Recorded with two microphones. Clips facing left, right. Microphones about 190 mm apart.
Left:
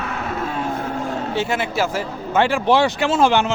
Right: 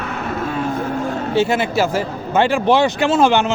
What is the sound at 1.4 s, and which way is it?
A man's voice, 30° right (ahead or behind).